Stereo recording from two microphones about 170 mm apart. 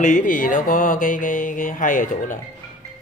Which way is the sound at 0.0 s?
50° left (ahead or behind).